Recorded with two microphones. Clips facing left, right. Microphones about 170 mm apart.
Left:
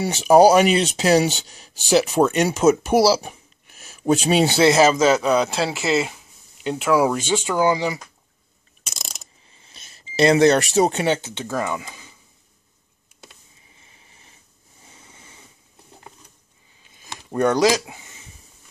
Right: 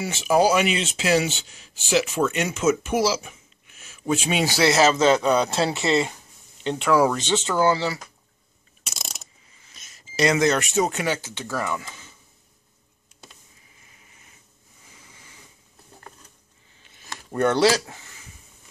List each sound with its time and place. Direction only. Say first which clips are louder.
0.0 s speech: left 7 dB; 35° left (ahead or behind); by 8.0 s 15° left (ahead or behind)
8.9 s mechanisms: even; centre (ahead or behind)
9.6 s beep: left 3 dB; 30° left (ahead or behind)
10.1 s speech: left 5 dB; 30° left (ahead or behind)
13.7 s a sound: left 2 dB; 30° left (ahead or behind)
17.0 s a sound: left 2 dB; 15° left (ahead or behind)